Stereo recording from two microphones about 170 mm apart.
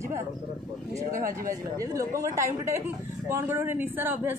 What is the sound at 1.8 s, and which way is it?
A woman's voice, 20° right (ahead or behind).